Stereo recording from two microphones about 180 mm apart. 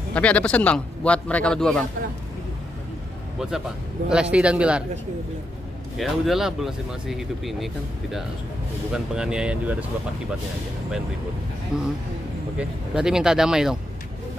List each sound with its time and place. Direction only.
0.1 s a man's voice: 5° left (ahead or behind)
3.3 s speech: centre (ahead or behind)
5.9 s speech: centre (ahead or behind)
11.7 s speech: 5° right (ahead or behind)